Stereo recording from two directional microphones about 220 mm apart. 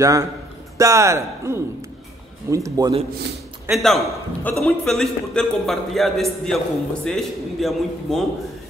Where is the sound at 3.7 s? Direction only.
Centre (ahead or behind).